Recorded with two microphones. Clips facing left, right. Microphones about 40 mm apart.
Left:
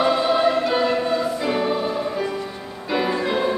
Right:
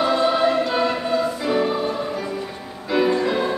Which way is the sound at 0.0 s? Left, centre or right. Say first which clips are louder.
Even; centre.